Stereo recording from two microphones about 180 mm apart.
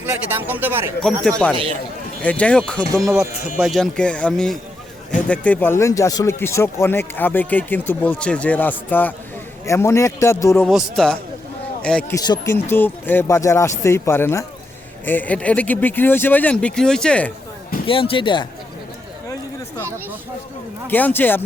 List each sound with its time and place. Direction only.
0.0 s speech: 10° right (ahead or behind)
1.2 s speech: 5° left (ahead or behind)
10.6 s speech: centre (ahead or behind)
12.1 s speech: 20° left (ahead or behind)
17.8 s speech: 30° left (ahead or behind)
20.8 s speech: 10° left (ahead or behind)